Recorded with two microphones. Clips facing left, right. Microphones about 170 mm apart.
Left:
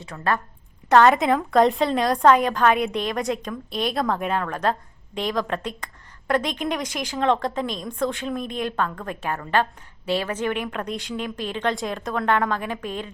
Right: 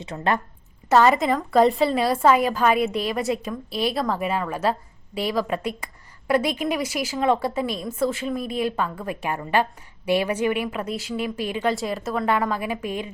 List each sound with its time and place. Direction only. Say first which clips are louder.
0.0 s a woman's voice: right 1 dB; 20° right (ahead or behind)
0.9 s a woman's voice: left 1 dB; 5° right (ahead or behind)